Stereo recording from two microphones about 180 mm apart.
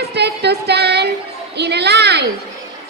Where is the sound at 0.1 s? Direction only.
70° right (ahead or behind).